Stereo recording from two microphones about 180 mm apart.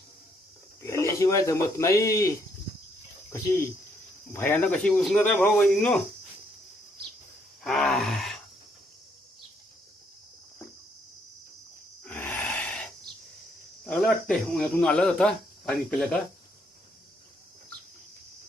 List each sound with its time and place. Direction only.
0.8 s a man's voice: 15° left (ahead or behind)
4.3 s speech: 10° left (ahead or behind)
7.6 s groan: centre (ahead or behind)
12.0 s gasp: 10° left (ahead or behind)
13.8 s speech: 5° left (ahead or behind)